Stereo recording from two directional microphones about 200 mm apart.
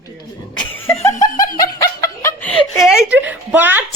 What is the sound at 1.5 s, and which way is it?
Snicker, 20° left (ahead or behind).